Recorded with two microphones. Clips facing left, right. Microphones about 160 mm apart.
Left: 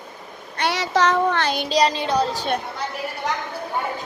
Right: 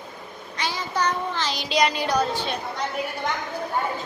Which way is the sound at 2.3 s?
45° left (ahead or behind).